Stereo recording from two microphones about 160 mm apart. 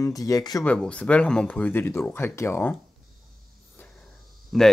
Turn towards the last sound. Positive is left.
turn(degrees=0)  # may be behind; listen again after turning